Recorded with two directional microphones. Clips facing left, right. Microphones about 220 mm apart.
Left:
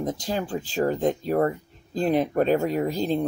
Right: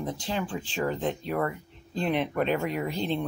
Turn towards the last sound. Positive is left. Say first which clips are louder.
# left 5 dB
turn(degrees=40)  # may be behind; listen again after turning